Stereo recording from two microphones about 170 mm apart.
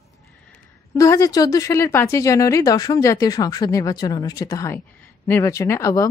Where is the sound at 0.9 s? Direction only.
20° left (ahead or behind).